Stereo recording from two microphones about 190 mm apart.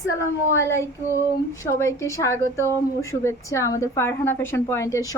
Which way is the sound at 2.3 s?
15° right (ahead or behind).